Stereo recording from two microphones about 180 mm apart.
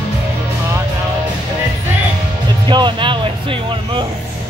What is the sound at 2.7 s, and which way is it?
Music, 25° right (ahead or behind).